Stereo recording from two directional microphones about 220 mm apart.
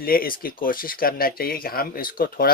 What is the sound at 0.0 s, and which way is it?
Speech, 40° left (ahead or behind).